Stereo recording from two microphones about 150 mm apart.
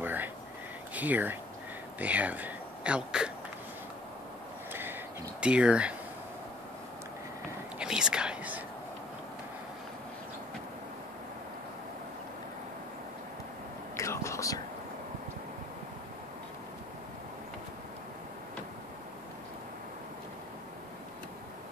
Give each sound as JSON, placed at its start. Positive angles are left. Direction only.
{"t": 0.0, "sound": "a sound", "side_deg": -10}
{"t": 0.9, "sound": "speech", "side_deg": -10}
{"t": 5.4, "sound": "speech", "side_deg": -5}
{"t": 7.8, "sound": "whispering", "side_deg": -5}
{"t": 13.9, "sound": "whispering", "side_deg": 20}